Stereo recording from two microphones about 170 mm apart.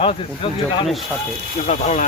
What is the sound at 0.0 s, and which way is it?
Speech, 30° left (ahead or behind).